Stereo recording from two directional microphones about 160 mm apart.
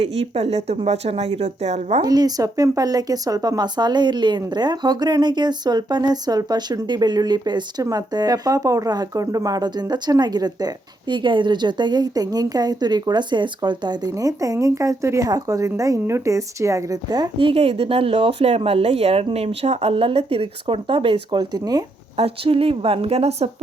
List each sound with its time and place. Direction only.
0.0 s speech: 40° right (ahead or behind)
2.0 s speech: 25° right (ahead or behind)
22.1 s speech: 35° right (ahead or behind)